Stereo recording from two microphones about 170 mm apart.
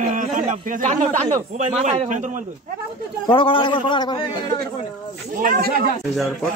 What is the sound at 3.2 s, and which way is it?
A man's voice, 30° left (ahead or behind).